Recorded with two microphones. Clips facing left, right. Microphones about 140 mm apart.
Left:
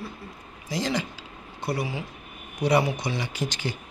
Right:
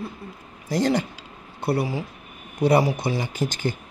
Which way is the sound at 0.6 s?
55° right (ahead or behind).